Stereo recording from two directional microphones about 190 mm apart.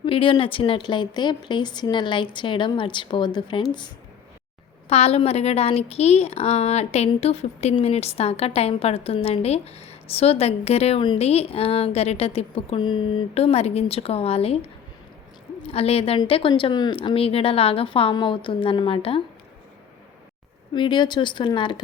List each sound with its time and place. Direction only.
0.0 s a woman's voice: 25° left (ahead or behind)
20.7 s a woman's voice: 25° left (ahead or behind)